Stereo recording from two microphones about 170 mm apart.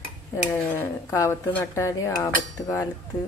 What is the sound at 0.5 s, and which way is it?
Speech, 15° left (ahead or behind).